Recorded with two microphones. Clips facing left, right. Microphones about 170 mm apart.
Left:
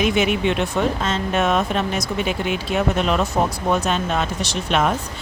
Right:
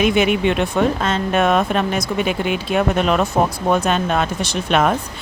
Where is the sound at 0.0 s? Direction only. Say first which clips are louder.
Right 3 dB; 60° right (ahead or behind).